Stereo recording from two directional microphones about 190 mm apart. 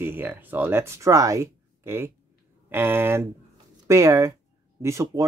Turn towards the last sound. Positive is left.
turn(degrees=-15)  # may be behind; listen again after turning